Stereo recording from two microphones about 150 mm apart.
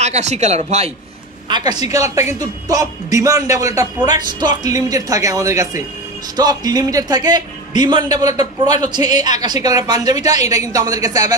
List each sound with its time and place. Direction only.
0.0 s speech: 50° right (ahead or behind)
1.5 s a man's voice: 30° right (ahead or behind)